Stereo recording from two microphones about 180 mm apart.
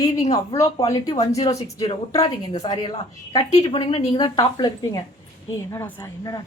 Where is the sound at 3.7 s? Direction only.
30° left (ahead or behind).